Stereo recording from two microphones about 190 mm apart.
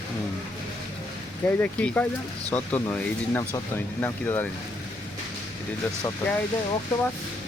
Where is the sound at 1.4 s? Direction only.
10° left (ahead or behind).